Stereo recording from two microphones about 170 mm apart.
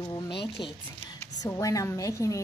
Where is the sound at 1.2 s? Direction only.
20° left (ahead or behind).